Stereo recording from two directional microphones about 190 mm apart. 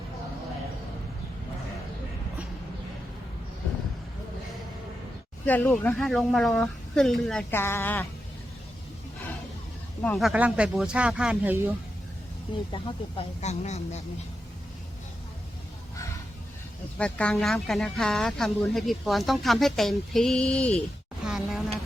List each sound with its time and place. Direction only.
5.5 s speech: 10° left (ahead or behind)
7.5 s a woman's voice: 10° left (ahead or behind)
10.0 s speech: 5° left (ahead or behind)
12.7 s speech: 30° left (ahead or behind)
17.0 s speech: 5° left (ahead or behind)
21.2 s a sound: centre (ahead or behind)